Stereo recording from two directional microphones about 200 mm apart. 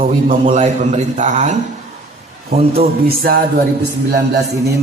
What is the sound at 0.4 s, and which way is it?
A man's voice, 35° right (ahead or behind).